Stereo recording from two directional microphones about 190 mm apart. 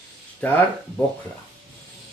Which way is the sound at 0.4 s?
10° left (ahead or behind).